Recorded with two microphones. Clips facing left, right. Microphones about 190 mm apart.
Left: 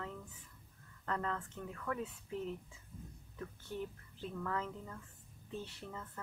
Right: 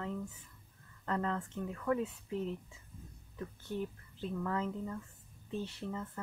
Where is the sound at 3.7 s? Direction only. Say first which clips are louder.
Right 4 dB; 25° right (ahead or behind).